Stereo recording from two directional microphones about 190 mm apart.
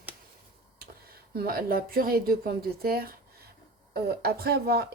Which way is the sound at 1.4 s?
55° right (ahead or behind).